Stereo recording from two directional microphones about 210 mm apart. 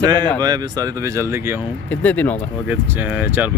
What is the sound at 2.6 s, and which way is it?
Speech, 5° right (ahead or behind).